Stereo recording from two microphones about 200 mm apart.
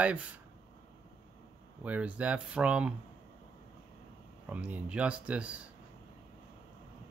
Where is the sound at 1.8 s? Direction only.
5° right (ahead or behind).